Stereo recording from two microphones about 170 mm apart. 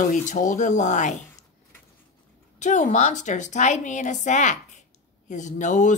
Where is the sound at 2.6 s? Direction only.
45° left (ahead or behind).